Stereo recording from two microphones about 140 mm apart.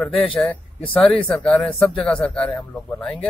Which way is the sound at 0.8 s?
40° left (ahead or behind).